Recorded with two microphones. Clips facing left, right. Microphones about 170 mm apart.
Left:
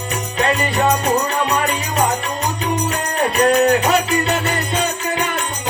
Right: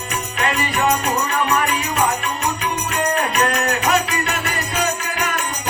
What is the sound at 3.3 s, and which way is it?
Music, 30° left (ahead or behind).